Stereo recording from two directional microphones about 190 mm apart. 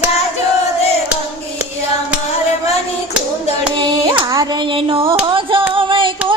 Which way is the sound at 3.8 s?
25° right (ahead or behind).